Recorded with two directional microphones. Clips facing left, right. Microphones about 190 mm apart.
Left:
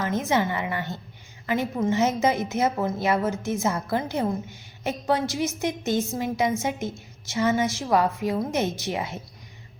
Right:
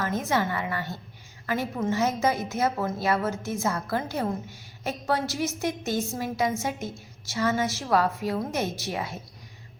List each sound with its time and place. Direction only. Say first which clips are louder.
0.3 s a woman's voice: left 2 dB; 20° left (ahead or behind)